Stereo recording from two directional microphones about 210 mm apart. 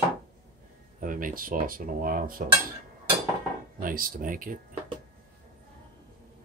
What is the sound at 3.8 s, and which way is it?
Cutlery, 40° right (ahead or behind).